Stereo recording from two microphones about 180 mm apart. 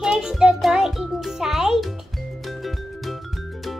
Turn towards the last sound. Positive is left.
turn(degrees=0)  # may be behind; listen again after turning